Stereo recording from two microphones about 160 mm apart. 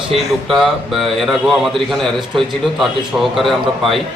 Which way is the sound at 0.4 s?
Centre (ahead or behind).